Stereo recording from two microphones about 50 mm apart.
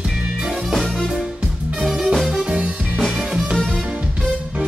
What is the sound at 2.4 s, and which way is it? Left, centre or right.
Music, right.